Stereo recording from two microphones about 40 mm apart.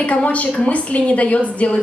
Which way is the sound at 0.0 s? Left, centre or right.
Left.